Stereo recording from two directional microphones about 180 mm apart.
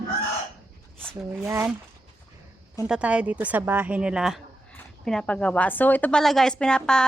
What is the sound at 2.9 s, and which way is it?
A woman's voice, 5° right (ahead or behind).